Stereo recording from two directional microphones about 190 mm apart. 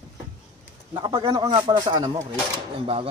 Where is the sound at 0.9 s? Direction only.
20° right (ahead or behind).